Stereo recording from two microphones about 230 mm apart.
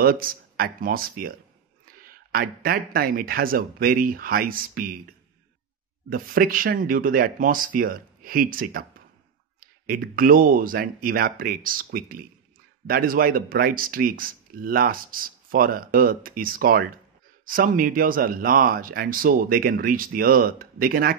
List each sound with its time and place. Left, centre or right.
0.0 s speech: right
6.0 s speech: right